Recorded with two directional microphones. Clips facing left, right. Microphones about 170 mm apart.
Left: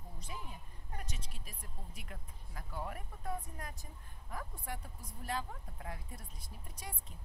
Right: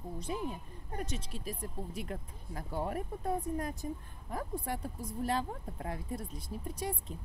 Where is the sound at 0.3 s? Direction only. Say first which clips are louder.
Right 11 dB; 30° right (ahead or behind).